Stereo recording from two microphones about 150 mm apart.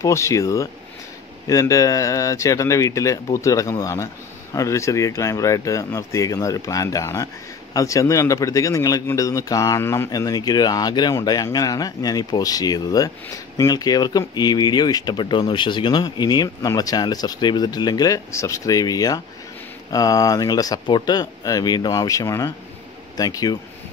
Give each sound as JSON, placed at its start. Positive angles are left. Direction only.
{"t": 0.0, "sound": "speech", "side_deg": 20}